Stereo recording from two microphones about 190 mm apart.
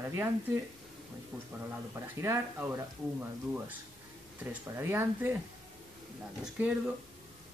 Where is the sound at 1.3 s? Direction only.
Centre (ahead or behind).